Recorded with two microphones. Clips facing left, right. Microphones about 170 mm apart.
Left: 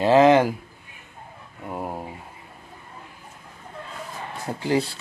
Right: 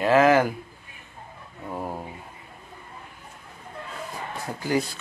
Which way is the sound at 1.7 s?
25° left (ahead or behind).